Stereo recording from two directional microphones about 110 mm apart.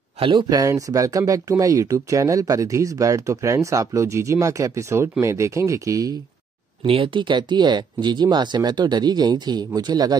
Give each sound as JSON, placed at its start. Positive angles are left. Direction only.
{"t": 0.2, "sound": "speech", "side_deg": -45}
{"t": 6.9, "sound": "speech", "side_deg": -50}